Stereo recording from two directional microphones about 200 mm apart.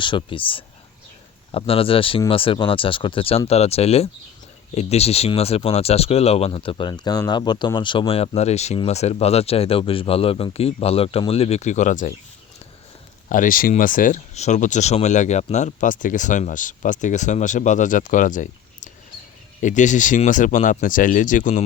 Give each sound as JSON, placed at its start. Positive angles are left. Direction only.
{"t": 0.0, "sound": "speech", "side_deg": 25}
{"t": 13.2, "sound": "speech", "side_deg": 40}